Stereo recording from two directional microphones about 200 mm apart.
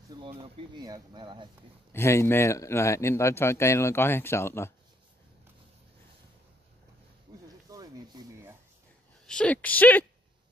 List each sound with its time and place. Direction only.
0.4 s speech: 20° right (ahead or behind)
1.9 s speech: 15° left (ahead or behind)
7.7 s a sound: 20° right (ahead or behind)
9.2 s speech: 5° left (ahead or behind)